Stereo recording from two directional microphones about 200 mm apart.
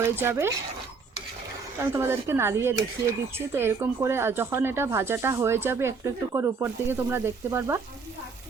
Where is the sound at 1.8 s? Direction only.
10° right (ahead or behind).